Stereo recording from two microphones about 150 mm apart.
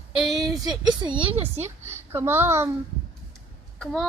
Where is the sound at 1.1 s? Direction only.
35° right (ahead or behind).